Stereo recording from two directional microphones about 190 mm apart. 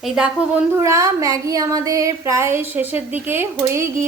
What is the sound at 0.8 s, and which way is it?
Speech, 15° right (ahead or behind).